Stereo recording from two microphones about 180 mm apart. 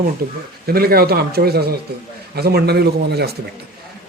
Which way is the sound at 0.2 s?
60° right (ahead or behind).